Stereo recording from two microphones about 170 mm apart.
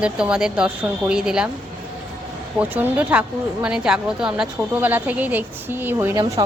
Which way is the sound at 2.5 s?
10° right (ahead or behind).